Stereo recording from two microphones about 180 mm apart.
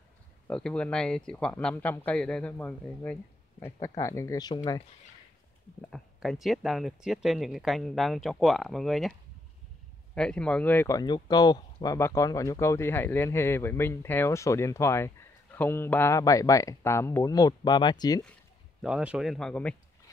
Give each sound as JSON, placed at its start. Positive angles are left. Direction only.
{"t": 0.5, "sound": "speech", "side_deg": 5}
{"t": 5.8, "sound": "speech", "side_deg": 5}
{"t": 10.1, "sound": "speech", "side_deg": 5}
{"t": 18.8, "sound": "speech", "side_deg": -5}